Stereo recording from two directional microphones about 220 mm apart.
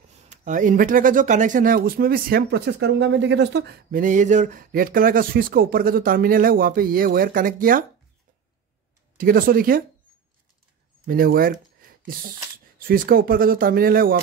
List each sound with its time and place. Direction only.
0.3 s speech: 35° right (ahead or behind)
9.1 s speech: 40° right (ahead or behind)
11.1 s speech: 40° right (ahead or behind)
12.7 s speech: 40° right (ahead or behind)